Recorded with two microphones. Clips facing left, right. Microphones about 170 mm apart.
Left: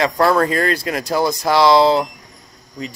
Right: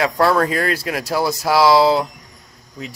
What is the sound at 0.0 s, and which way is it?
Speech, 5° right (ahead or behind).